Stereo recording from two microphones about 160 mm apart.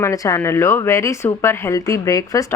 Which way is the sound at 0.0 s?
20° left (ahead or behind).